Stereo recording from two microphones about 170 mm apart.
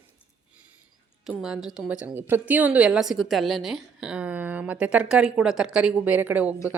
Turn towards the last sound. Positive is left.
turn(degrees=-10)  # may be behind; listen again after turning